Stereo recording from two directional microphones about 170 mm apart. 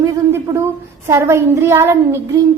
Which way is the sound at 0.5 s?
15° right (ahead or behind).